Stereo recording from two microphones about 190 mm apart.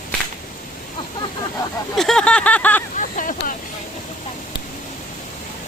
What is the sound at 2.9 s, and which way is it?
Speech, 45° left (ahead or behind).